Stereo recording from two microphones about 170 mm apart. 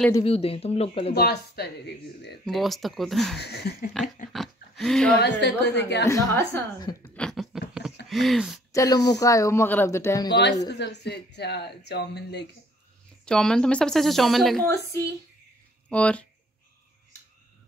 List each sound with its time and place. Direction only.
0.2 s speech: 35° left (ahead or behind)
1.1 s a woman's voice: 70° left (ahead or behind)
2.4 s speech: centre (ahead or behind)
3.3 s a woman's voice: 75° left (ahead or behind)
4.3 s speech: centre (ahead or behind)
5.2 s speech: 85° left
6.0 s speech: 15° left (ahead or behind)
7.2 s a sound: centre (ahead or behind)
8.1 s speech: centre (ahead or behind)
8.7 s speech: 20° left (ahead or behind)
10.7 s speech: 85° left
13.2 s speech: 5° left (ahead or behind)
15.9 s speech: 5° left (ahead or behind)